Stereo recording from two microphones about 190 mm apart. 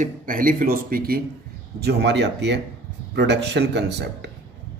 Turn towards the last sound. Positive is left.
turn(degrees=-65)  # may be behind; listen again after turning